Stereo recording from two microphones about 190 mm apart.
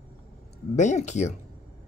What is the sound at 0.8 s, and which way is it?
Speech, 40° left (ahead or behind).